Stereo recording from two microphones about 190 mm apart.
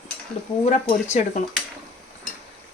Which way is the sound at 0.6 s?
35° left (ahead or behind).